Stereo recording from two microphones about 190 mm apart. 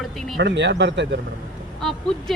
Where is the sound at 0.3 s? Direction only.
65° right (ahead or behind).